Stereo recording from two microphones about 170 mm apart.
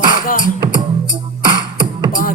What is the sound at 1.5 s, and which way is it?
Beatboxing, 25° right (ahead or behind).